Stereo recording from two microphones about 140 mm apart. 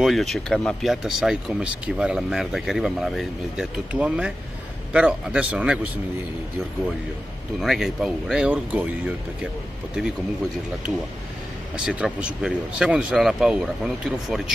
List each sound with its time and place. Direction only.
0.0 s speech: centre (ahead or behind)
7.6 s speech: centre (ahead or behind)
11.7 s speech: 5° right (ahead or behind)